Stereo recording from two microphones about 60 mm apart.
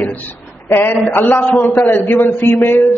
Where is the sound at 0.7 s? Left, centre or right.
Left.